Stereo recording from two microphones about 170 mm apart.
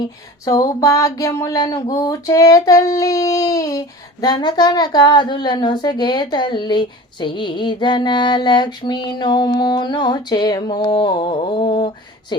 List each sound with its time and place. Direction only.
0.4 s child singing: 20° left (ahead or behind)